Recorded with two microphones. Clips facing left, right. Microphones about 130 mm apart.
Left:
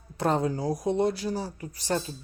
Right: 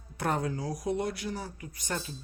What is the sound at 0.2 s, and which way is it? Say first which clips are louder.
Speech: left 5 dB; 25° left (ahead or behind).